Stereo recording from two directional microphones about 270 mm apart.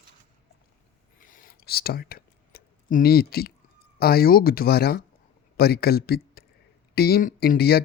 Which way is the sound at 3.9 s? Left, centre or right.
Left.